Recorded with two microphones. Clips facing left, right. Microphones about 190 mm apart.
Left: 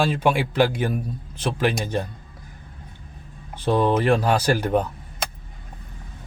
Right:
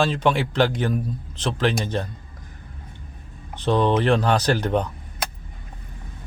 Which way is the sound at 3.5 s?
10° left (ahead or behind).